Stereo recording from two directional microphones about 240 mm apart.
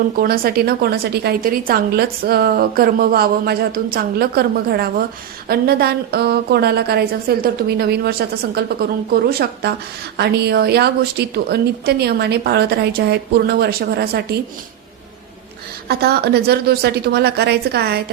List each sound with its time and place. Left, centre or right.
0.2 s a woman's voice: right
15.9 s a woman's voice: right